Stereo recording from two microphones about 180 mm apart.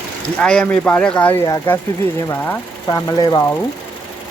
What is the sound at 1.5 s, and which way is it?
Speech, 15° left (ahead or behind).